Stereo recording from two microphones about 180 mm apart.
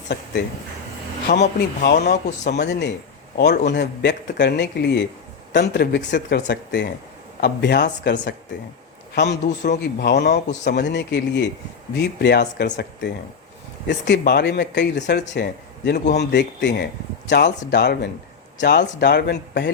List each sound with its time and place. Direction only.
0.1 s speech: 70° left (ahead or behind)
1.3 s speech: 45° left (ahead or behind)
2.5 s speech: 70° left (ahead or behind)
10.3 s speech: 40° left (ahead or behind)
10.7 s speech: 70° left (ahead or behind)